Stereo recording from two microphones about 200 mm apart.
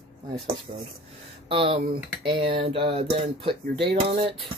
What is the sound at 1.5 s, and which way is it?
Speech, 25° right (ahead or behind).